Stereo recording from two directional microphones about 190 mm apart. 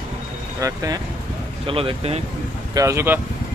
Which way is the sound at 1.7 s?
30° right (ahead or behind).